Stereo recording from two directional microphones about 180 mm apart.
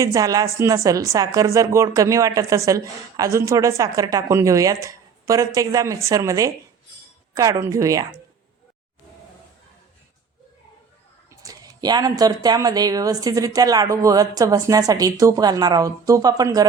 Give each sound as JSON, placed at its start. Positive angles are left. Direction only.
{"t": 0.0, "sound": "a woman's voice", "side_deg": -20}
{"t": 11.3, "sound": "a woman's voice", "side_deg": -20}